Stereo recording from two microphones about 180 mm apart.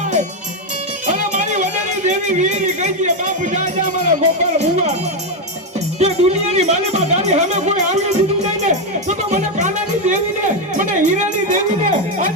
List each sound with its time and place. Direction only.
1.0 s speech: 45° right (ahead or behind)
6.0 s speech: 35° right (ahead or behind)
8.6 s music: 40° right (ahead or behind)